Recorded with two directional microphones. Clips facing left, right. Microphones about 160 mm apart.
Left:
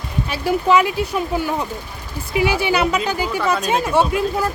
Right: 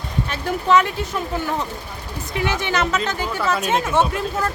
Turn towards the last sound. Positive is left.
turn(degrees=10)  # may be behind; listen again after turning